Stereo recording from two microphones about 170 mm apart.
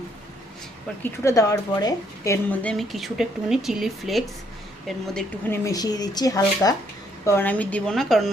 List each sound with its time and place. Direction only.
1.0 s a woman's voice: 20° left (ahead or behind); by 5.0 s centre (ahead or behind)
5.5 s a woman's voice: 20° left (ahead or behind); by 8.3 s centre (ahead or behind)